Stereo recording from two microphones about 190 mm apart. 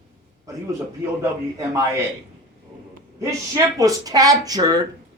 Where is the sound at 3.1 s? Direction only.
15° right (ahead or behind).